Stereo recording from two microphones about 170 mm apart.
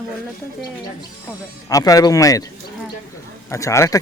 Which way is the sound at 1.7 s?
20° left (ahead or behind).